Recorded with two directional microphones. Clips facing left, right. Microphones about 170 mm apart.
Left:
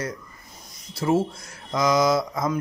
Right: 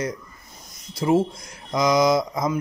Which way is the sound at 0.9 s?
15° right (ahead or behind).